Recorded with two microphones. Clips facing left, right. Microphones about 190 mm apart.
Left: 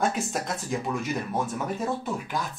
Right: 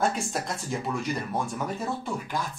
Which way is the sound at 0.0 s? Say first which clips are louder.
Even; centre (ahead or behind).